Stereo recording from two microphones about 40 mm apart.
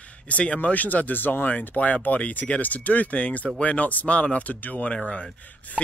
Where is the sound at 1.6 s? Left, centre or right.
Left.